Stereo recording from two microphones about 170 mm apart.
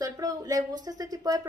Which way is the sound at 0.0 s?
20° right (ahead or behind).